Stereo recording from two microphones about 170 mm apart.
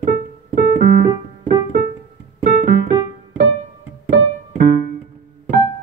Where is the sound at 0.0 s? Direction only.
60° right (ahead or behind).